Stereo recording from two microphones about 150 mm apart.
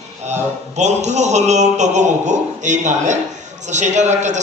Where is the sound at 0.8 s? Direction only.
50° right (ahead or behind).